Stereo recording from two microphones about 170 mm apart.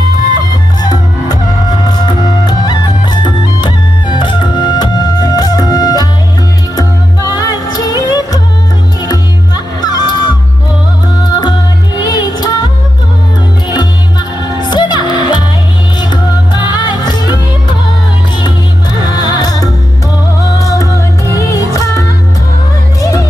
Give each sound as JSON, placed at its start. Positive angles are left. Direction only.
{"t": 1.9, "sound": "music", "side_deg": 25}
{"t": 9.8, "sound": "music", "side_deg": 25}
{"t": 14.6, "sound": "music", "side_deg": 25}
{"t": 16.7, "sound": "music", "side_deg": 25}
{"t": 19.1, "sound": "music", "side_deg": 25}